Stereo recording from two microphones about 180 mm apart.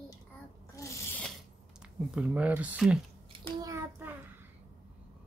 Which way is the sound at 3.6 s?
15° right (ahead or behind).